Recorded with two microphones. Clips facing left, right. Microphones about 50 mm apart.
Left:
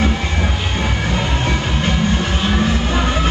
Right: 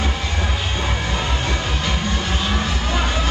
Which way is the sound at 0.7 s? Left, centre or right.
Left.